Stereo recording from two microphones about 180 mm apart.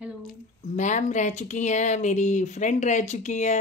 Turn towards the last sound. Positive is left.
turn(degrees=40)  # may be behind; listen again after turning